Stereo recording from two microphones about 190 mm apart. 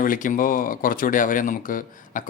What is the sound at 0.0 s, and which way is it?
Speech, 45° left (ahead or behind).